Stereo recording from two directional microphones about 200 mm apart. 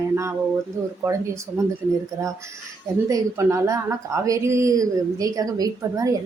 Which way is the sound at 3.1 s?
15° right (ahead or behind).